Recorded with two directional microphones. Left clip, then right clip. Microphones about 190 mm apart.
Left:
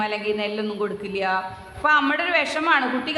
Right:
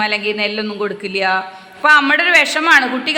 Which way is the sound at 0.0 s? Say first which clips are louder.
Right 7 dB; 15° right (ahead or behind).